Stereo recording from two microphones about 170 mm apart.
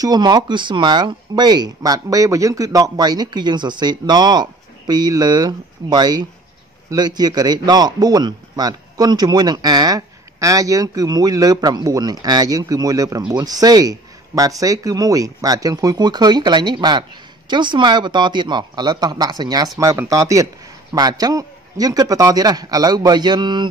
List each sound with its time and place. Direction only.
0.0 s a man's voice: 25° right (ahead or behind)